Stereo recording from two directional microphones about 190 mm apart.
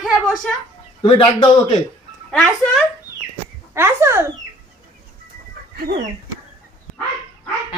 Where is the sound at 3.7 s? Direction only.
15° right (ahead or behind).